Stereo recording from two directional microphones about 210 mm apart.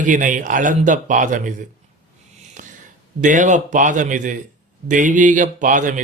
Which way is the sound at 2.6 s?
35° right (ahead or behind).